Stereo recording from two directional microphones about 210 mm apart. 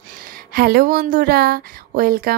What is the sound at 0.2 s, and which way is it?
Speech, 45° right (ahead or behind).